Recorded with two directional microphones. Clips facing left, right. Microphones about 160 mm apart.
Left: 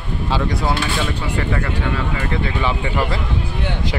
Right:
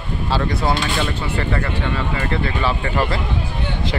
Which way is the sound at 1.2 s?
5° left (ahead or behind).